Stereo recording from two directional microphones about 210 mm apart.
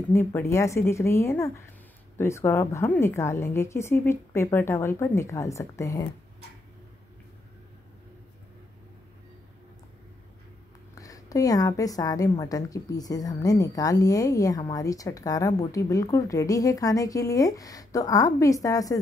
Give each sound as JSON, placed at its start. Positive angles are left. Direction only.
{"t": 0.1, "sound": "a woman's voice", "side_deg": 10}
{"t": 11.0, "sound": "a woman's voice", "side_deg": 15}